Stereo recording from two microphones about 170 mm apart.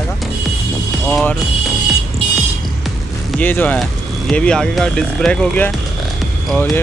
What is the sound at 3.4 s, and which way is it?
Speech, 10° left (ahead or behind).